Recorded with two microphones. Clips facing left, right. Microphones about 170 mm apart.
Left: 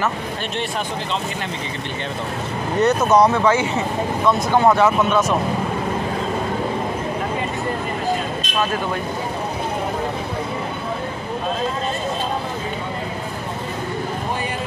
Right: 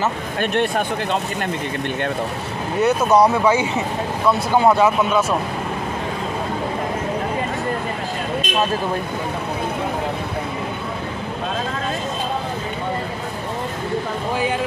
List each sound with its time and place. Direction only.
0.4 s speech: 55° right (ahead or behind)
2.8 s speech: 10° right (ahead or behind)